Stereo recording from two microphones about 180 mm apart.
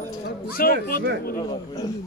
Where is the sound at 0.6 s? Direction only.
55° left (ahead or behind).